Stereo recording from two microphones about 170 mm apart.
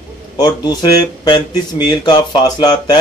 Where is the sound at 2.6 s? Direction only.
25° left (ahead or behind).